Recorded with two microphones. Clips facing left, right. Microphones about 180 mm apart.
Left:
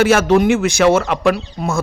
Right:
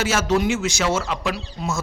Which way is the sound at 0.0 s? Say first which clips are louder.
Left 8 dB; 60° left (ahead or behind).